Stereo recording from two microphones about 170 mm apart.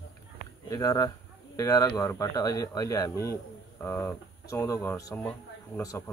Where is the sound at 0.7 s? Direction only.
20° left (ahead or behind).